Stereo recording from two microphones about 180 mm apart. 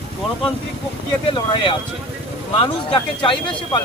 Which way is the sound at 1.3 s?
30° left (ahead or behind).